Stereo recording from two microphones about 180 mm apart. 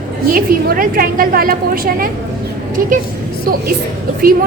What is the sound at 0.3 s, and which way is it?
A woman's voice, 50° right (ahead or behind).